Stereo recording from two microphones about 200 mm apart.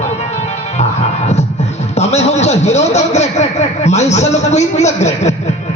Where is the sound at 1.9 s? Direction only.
35° left (ahead or behind).